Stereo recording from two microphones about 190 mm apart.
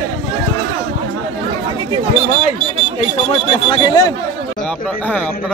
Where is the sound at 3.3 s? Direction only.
25° left (ahead or behind).